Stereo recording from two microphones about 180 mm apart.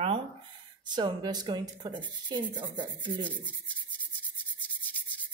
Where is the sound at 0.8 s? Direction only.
25° right (ahead or behind).